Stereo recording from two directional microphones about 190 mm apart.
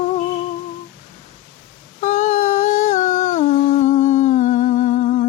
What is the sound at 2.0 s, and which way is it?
Humming, 40° left (ahead or behind).